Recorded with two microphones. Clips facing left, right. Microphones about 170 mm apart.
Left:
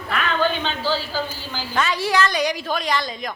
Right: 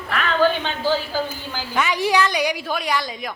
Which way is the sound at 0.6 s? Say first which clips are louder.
Right 2 dB; 15° right (ahead or behind).